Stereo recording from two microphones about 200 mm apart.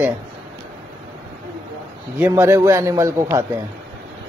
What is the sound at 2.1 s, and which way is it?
A man's voice, 10° right (ahead or behind).